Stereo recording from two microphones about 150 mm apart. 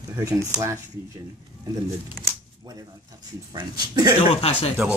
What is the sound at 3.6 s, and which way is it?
Speech, 25° right (ahead or behind).